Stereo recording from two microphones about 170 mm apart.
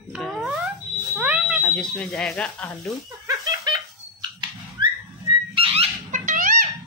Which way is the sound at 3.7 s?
25° right (ahead or behind).